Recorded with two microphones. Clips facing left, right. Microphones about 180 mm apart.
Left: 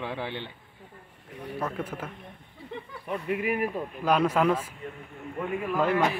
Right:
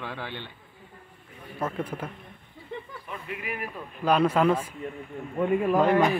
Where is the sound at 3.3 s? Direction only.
45° left (ahead or behind).